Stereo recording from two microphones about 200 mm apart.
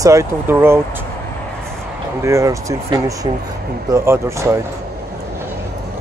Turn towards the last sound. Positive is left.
turn(degrees=-15)  # may be behind; listen again after turning